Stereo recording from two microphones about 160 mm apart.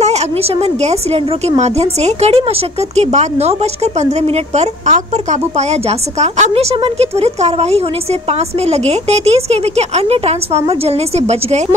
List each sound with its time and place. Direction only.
0.0 s a woman's voice: 40° right (ahead or behind)